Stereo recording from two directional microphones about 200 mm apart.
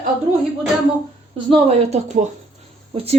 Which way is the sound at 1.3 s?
30° right (ahead or behind).